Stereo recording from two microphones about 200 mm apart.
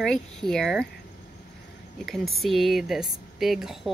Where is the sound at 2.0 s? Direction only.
Centre (ahead or behind).